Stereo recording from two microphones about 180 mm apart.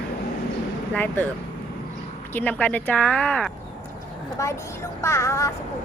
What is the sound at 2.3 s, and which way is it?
Speech, 10° left (ahead or behind).